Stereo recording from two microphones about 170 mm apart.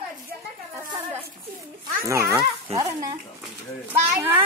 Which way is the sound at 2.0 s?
15° right (ahead or behind).